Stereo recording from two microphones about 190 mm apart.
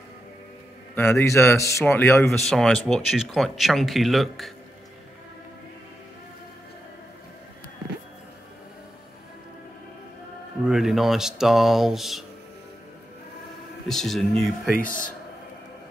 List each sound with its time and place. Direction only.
0.9 s a man's voice: 15° left (ahead or behind)
2.4 s speech: centre (ahead or behind)
10.6 s speech: 5° right (ahead or behind)
13.8 s speech: centre (ahead or behind)
14.8 s speech: 45° left (ahead or behind)